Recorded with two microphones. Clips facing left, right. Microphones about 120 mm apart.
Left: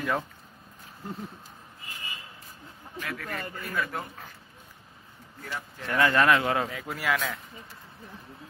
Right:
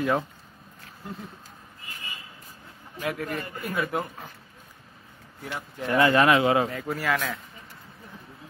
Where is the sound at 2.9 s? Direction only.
25° right (ahead or behind).